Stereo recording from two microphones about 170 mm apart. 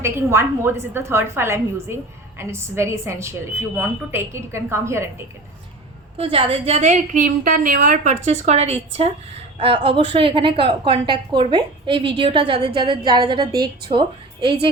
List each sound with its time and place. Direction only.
0.0 s a woman's voice: 15° right (ahead or behind)
6.1 s a woman's voice: 35° right (ahead or behind)